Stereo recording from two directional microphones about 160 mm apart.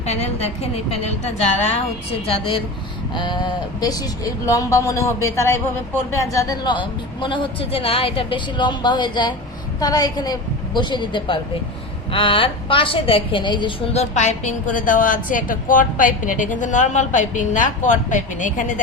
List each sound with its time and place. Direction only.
0.0 s a woman's voice: 40° left (ahead or behind)
3.2 s a woman's voice: 30° left (ahead or behind)
13.9 s a woman's voice: 45° left (ahead or behind)